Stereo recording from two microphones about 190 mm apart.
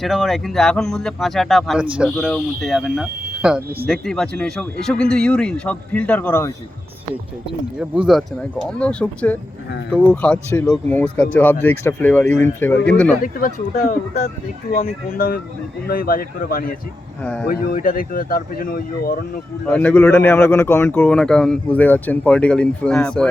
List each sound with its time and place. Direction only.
0.0 s speech: centre (ahead or behind)
7.8 s speech: 5° right (ahead or behind)
13.2 s speech: 45° left (ahead or behind)
19.7 s speech: 10° left (ahead or behind)